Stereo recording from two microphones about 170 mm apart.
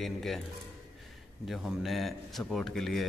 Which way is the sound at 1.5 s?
Centre (ahead or behind).